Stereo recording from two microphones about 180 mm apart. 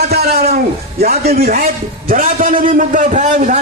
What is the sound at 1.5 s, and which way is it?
A man's voice, 50° right (ahead or behind).